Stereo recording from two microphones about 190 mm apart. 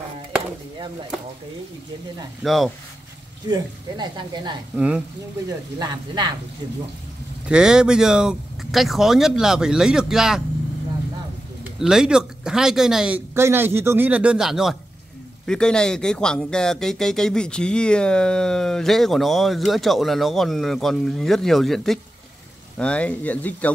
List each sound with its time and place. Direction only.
2.4 s speech: centre (ahead or behind)
3.4 s speech: 20° right (ahead or behind)
4.7 s speech: 5° right (ahead or behind)
5.8 s speech: 20° right (ahead or behind)
7.4 s speech: 5° right (ahead or behind)
11.6 s speech: 5° right (ahead or behind)